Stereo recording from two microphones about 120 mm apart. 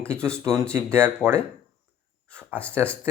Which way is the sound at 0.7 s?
20° right (ahead or behind).